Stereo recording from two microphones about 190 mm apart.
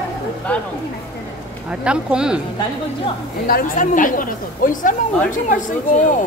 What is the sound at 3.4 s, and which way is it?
Speech, 50° left (ahead or behind).